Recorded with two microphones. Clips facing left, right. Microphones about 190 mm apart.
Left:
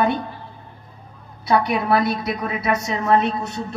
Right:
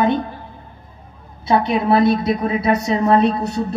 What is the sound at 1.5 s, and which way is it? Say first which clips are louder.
A woman's voice: right 3 dB; 25° right (ahead or behind).